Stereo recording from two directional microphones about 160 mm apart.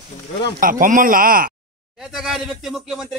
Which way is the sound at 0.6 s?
60° right (ahead or behind).